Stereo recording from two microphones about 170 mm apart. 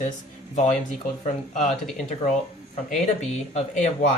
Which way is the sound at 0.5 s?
40° left (ahead or behind).